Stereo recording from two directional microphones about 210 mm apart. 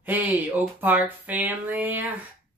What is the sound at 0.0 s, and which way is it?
Speech, 10° right (ahead or behind).